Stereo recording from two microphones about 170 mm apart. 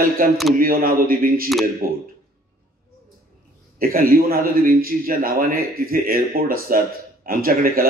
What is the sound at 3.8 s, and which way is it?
A man's voice, 60° right (ahead or behind).